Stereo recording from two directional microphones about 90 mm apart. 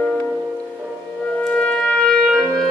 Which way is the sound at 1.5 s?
15° left (ahead or behind).